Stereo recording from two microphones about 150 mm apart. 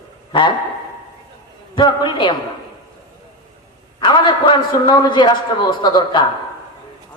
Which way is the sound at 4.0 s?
30° left (ahead or behind).